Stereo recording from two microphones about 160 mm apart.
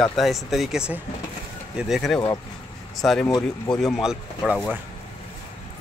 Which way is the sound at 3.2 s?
25° left (ahead or behind).